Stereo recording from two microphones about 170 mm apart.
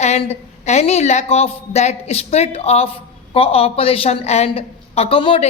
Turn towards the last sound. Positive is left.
turn(degrees=35)  # may be behind; listen again after turning